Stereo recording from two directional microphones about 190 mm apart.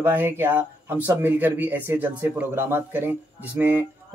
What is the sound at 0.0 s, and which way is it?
Speech, 10° right (ahead or behind).